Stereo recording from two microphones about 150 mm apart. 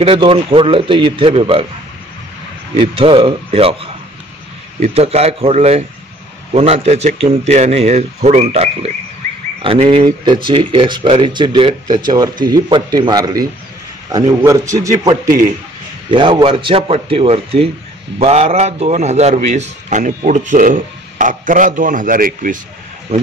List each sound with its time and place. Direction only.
0.0 s speech: 40° right (ahead or behind)
2.7 s speech: 35° right (ahead or behind)
10.0 s a man's voice: 30° right (ahead or behind)
16.1 s a man's voice: 35° right (ahead or behind); by 22.6 s 65° right (ahead or behind)
23.1 s speech: 45° right (ahead or behind)